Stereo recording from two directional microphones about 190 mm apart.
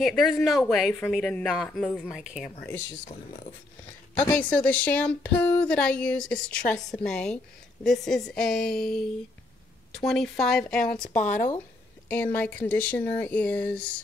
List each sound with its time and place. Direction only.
0.0 s speech: centre (ahead or behind)
4.2 s speech: 10° left (ahead or behind)
9.9 s speech: centre (ahead or behind)
11.1 s speech: 40° left (ahead or behind)
12.1 s speech: 10° left (ahead or behind)